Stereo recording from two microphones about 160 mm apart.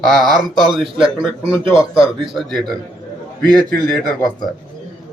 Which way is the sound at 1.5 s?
30° right (ahead or behind).